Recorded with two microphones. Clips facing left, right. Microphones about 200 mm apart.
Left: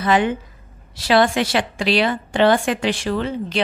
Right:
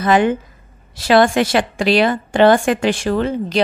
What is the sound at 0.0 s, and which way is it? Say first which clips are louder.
A woman's voice: right 4 dB; 45° right (ahead or behind).